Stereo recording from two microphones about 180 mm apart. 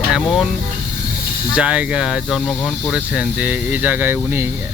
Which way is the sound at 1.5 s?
5° right (ahead or behind).